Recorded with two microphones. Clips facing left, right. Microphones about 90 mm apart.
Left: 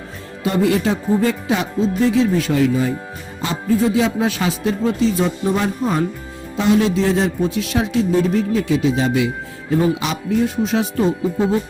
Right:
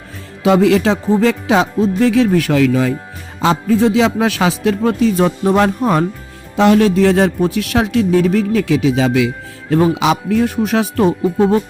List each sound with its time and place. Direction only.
0.4 s speech: 90° right
2.0 s a man's voice: 65° right (ahead or behind)
3.4 s a man's voice: 90° right; by 11.6 s 65° right (ahead or behind)